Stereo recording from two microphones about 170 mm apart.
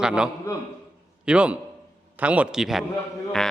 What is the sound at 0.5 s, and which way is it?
Speech, 20° left (ahead or behind).